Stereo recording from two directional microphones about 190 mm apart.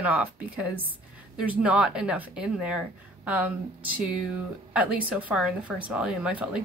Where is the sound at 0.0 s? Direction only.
10° right (ahead or behind).